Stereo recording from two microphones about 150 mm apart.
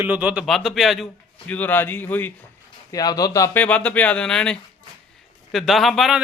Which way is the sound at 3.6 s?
10° left (ahead or behind).